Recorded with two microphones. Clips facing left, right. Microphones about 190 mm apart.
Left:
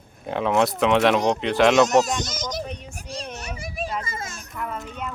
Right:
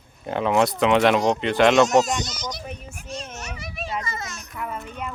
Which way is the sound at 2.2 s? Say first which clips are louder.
Left 3 dB; 45° left (ahead or behind).